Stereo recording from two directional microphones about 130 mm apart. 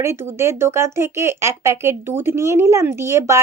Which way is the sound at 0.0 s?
20° right (ahead or behind).